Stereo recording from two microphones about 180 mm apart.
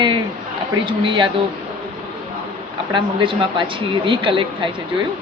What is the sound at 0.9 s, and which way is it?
Speech, 25° right (ahead or behind).